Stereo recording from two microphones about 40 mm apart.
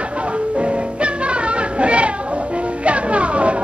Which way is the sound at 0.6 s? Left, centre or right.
Right.